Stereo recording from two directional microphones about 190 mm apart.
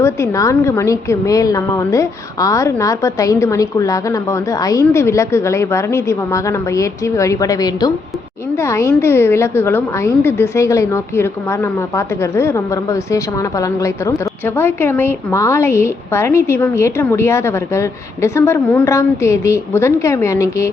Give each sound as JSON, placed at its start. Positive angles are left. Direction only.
{"t": 0.0, "sound": "a woman's voice", "side_deg": 15}